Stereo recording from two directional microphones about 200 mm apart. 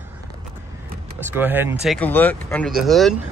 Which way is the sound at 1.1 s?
10° right (ahead or behind).